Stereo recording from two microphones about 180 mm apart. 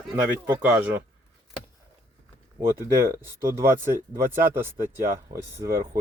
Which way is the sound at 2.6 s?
15° right (ahead or behind).